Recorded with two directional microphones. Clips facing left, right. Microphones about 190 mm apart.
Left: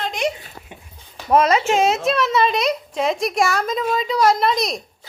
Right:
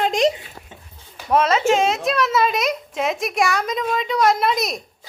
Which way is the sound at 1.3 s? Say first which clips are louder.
Left 1 dB; 10° left (ahead or behind).